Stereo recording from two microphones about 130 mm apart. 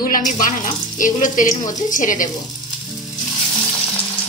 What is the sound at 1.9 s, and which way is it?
Speech, 90° left.